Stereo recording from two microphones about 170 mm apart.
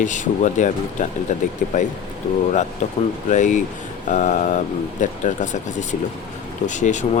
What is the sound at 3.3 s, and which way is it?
Speech, 45° left (ahead or behind).